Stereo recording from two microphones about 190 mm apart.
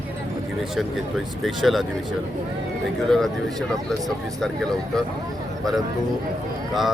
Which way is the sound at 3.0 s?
Centre (ahead or behind).